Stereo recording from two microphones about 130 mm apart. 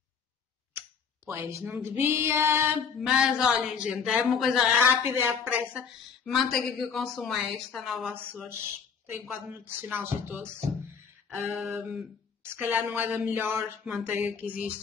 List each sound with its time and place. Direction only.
1.2 s speech: 20° right (ahead or behind)
1.7 s female singing: 20° right (ahead or behind)
3.0 s speech: 5° right (ahead or behind)
4.7 s speech: 20° right (ahead or behind); by 8.1 s centre (ahead or behind)
9.3 s a woman's voice: 15° right (ahead or behind)
11.6 s a woman's voice: 5° right (ahead or behind)